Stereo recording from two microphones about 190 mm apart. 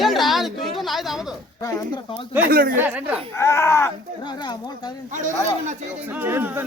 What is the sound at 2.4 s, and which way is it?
Speech, 50° right (ahead or behind).